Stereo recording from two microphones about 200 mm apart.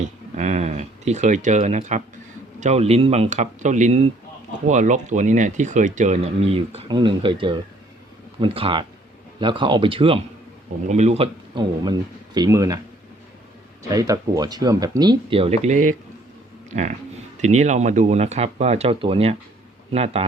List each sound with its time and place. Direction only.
0.3 s speech: 35° right (ahead or behind); by 12.8 s 15° right (ahead or behind)
13.8 s speech: 15° right (ahead or behind)